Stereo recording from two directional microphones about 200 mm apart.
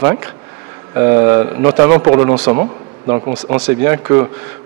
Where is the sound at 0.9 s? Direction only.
20° right (ahead or behind).